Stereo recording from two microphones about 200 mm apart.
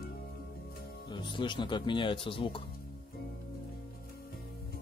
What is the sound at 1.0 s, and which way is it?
Speech, 25° left (ahead or behind).